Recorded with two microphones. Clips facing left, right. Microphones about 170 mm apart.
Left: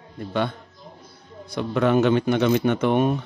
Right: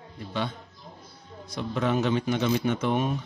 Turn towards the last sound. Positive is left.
turn(degrees=55)  # may be behind; listen again after turning